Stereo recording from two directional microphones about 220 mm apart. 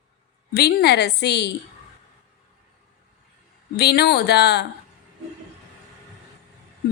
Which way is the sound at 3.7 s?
45° left (ahead or behind).